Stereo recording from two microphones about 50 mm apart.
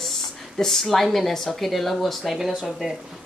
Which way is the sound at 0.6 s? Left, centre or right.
Centre.